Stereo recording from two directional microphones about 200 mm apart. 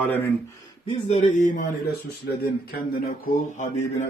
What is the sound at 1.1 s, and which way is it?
Speech, 35° left (ahead or behind).